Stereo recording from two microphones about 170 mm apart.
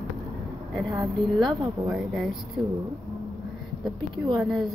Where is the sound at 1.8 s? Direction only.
5° right (ahead or behind).